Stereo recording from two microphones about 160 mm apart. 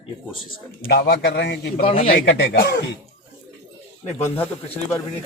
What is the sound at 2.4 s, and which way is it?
Speech, 70° left (ahead or behind).